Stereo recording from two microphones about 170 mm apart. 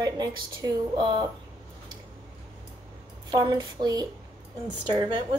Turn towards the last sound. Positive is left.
turn(degrees=-30)  # may be behind; listen again after turning